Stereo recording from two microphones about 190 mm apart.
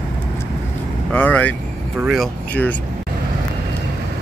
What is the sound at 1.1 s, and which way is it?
Speech, 10° left (ahead or behind).